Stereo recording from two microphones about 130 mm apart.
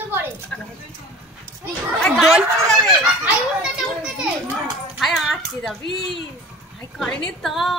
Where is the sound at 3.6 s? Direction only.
5° right (ahead or behind).